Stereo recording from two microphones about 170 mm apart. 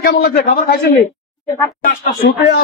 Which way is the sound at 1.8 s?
50° left (ahead or behind).